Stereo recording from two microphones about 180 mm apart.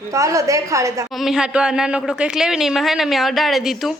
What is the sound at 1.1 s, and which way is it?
A woman's voice, centre (ahead or behind).